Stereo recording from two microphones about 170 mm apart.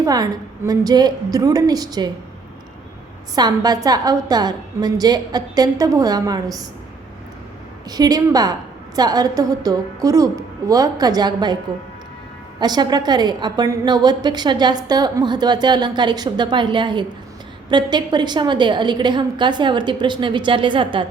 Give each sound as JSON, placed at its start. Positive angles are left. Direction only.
{"t": 0.0, "sound": "a woman's voice", "side_deg": -20}
{"t": 3.3, "sound": "a woman's voice", "side_deg": -20}
{"t": 7.9, "sound": "a woman's voice", "side_deg": -25}
{"t": 12.5, "sound": "a woman's voice", "side_deg": -25}